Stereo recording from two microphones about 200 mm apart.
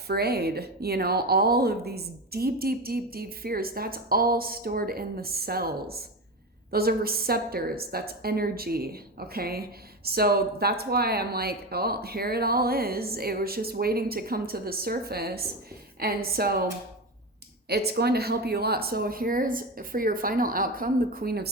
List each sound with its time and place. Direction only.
0.1 s a woman's voice: 50° right (ahead or behind)
17.7 s a woman's voice: 55° right (ahead or behind)